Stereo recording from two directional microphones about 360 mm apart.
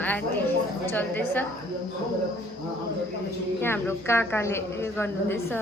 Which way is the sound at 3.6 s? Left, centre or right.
Centre.